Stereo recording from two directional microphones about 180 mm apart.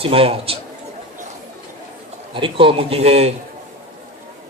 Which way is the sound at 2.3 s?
30° right (ahead or behind).